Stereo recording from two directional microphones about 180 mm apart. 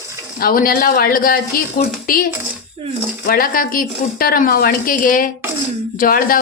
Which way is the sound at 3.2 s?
50° left (ahead or behind).